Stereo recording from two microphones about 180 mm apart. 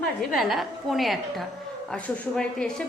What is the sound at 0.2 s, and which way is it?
A woman's voice, centre (ahead or behind).